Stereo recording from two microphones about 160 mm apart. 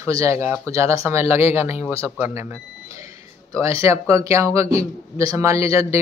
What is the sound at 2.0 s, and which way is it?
Speech, 15° right (ahead or behind).